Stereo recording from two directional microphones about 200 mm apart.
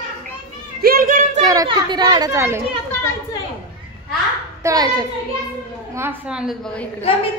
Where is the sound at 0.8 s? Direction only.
45° right (ahead or behind).